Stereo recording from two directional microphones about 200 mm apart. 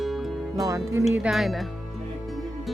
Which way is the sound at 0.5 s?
15° right (ahead or behind).